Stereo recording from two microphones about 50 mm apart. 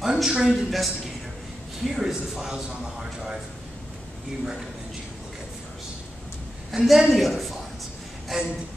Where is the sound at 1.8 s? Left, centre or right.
Centre.